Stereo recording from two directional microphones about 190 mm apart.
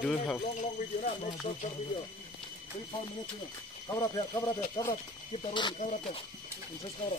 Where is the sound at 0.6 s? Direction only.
40° left (ahead or behind).